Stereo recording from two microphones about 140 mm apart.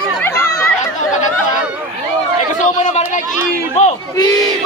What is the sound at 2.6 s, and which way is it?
Speech, 55° left (ahead or behind).